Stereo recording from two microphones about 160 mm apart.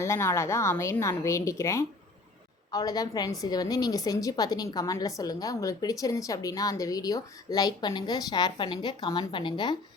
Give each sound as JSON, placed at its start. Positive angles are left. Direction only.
{"t": 0.0, "sound": "a woman's voice", "side_deg": 15}